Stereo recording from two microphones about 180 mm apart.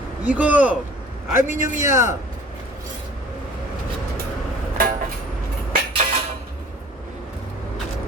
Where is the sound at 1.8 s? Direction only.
15° right (ahead or behind).